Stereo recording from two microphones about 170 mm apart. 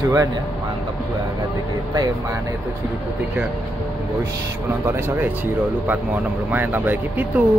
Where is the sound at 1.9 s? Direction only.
20° right (ahead or behind).